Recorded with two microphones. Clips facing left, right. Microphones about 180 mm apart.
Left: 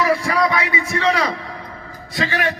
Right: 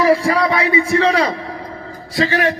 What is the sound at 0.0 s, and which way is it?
A man's voice, 30° right (ahead or behind).